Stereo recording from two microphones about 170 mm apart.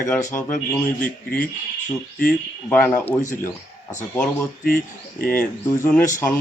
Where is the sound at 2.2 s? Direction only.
10° left (ahead or behind).